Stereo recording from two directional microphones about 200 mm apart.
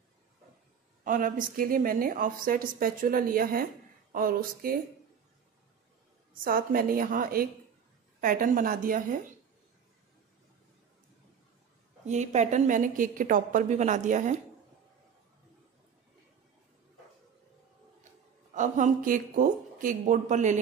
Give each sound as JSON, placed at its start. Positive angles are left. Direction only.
{"t": 1.0, "sound": "a woman's voice", "side_deg": -40}
{"t": 6.4, "sound": "a woman's voice", "side_deg": -45}
{"t": 12.1, "sound": "a woman's voice", "side_deg": -35}
{"t": 18.5, "sound": "a woman's voice", "side_deg": -40}